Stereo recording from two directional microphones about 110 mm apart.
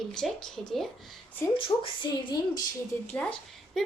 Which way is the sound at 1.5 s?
50° left (ahead or behind).